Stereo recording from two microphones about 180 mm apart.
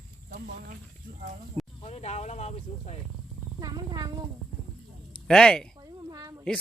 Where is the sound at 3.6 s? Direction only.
20° right (ahead or behind).